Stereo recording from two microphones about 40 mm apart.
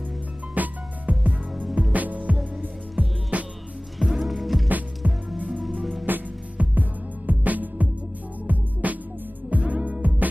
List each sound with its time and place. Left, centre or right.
0.6 s music: right
4.0 s music: centre
4.6 s music: right
5.8 s music: centre
6.0 s music: right